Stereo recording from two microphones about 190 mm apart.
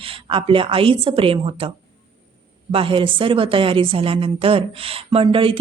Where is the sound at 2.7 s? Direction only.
30° right (ahead or behind).